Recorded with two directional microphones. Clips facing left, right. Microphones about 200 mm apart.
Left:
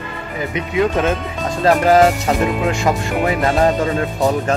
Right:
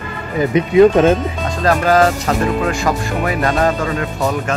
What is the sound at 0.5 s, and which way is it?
Speech, 40° right (ahead or behind).